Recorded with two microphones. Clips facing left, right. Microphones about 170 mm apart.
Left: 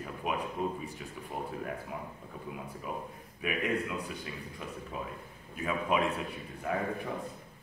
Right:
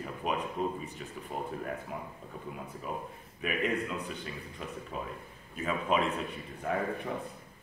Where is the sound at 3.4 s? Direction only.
5° left (ahead or behind).